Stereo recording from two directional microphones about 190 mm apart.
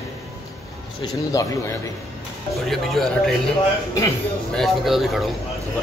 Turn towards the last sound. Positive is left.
turn(degrees=0)  # may be behind; listen again after turning